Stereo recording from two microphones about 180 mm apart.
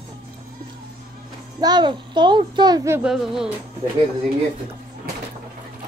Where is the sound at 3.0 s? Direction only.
Centre (ahead or behind).